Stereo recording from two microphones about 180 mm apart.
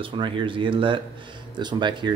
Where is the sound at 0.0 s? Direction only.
30° right (ahead or behind).